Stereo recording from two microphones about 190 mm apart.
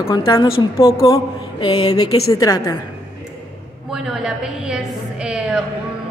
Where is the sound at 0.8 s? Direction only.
25° left (ahead or behind).